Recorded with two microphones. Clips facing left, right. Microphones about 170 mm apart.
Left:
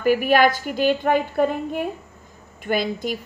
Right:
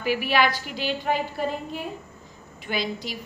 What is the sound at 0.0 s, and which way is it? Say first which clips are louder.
A woman's voice: left 6 dB; 45° left (ahead or behind).